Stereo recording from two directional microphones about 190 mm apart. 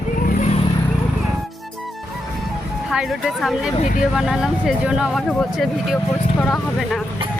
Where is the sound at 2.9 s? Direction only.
5° right (ahead or behind).